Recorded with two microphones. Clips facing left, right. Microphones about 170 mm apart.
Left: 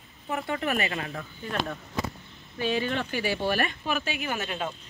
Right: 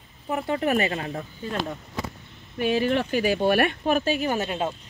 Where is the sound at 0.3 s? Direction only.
35° right (ahead or behind).